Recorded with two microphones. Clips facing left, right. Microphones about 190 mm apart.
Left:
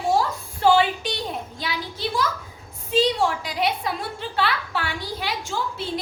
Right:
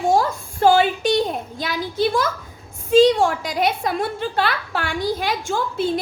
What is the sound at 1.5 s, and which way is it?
A woman's voice, 50° right (ahead or behind).